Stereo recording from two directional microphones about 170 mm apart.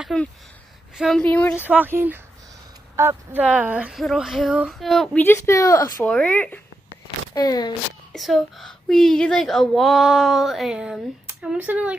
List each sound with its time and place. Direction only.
0.0 s speech: 5° left (ahead or behind)
1.6 s speech: 10° right (ahead or behind); by 6.0 s 20° left (ahead or behind)
6.0 s speech: 10° left (ahead or behind)
7.3 s speech: 25° left (ahead or behind)
8.1 s speech: centre (ahead or behind)